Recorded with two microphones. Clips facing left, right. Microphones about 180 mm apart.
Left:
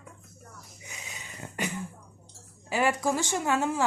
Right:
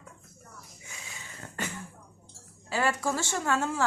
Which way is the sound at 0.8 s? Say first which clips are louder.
Left 3 dB; 20° left (ahead or behind).